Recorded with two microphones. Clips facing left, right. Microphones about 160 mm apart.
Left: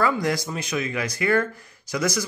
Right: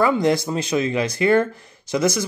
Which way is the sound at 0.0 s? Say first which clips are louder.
Right 5 dB; 25° right (ahead or behind).